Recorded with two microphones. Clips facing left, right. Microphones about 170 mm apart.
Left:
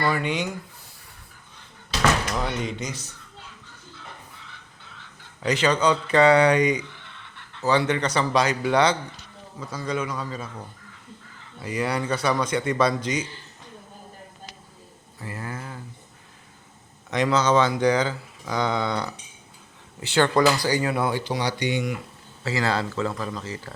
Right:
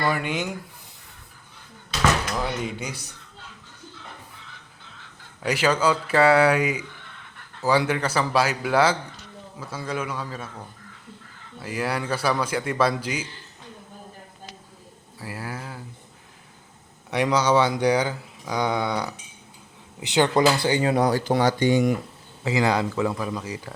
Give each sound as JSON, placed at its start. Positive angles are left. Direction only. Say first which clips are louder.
{"t": 0.0, "sound": "speech", "louder": "left 1 dB", "side_deg": -5}
{"t": 2.3, "sound": "speech", "louder": "even", "side_deg": -5}
{"t": 5.4, "sound": "a man's voice", "louder": "even", "side_deg": -5}
{"t": 11.6, "sound": "a man's voice", "louder": "left 1 dB", "side_deg": -5}
{"t": 15.2, "sound": "speech", "louder": "even", "side_deg": -5}
{"t": 17.1, "sound": "speech", "louder": "even", "side_deg": -10}
{"t": 22.4, "sound": "speech", "louder": "right 3 dB", "side_deg": -15}